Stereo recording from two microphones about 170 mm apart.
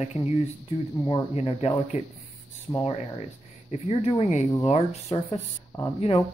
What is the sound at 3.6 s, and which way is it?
Speech, 35° left (ahead or behind).